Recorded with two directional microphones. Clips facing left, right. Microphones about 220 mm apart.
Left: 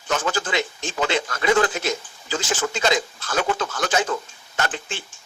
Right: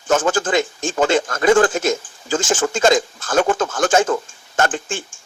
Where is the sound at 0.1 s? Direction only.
50° right (ahead or behind).